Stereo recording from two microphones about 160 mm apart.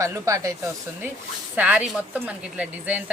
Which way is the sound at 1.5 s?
10° right (ahead or behind).